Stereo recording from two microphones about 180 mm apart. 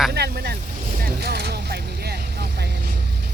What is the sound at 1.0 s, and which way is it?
Music, 65° right (ahead or behind).